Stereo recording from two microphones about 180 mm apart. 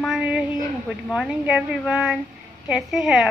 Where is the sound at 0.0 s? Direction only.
5° right (ahead or behind).